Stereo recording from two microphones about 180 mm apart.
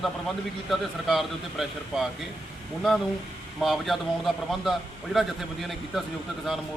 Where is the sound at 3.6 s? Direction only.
Centre (ahead or behind).